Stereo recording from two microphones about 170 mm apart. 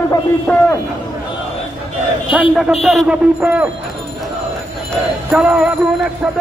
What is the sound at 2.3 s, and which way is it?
Speech, 5° right (ahead or behind).